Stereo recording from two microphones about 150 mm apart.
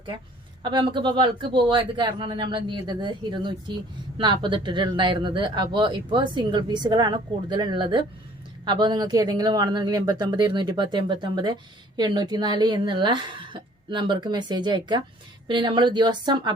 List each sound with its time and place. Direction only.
0.1 s speech: 25° right (ahead or behind)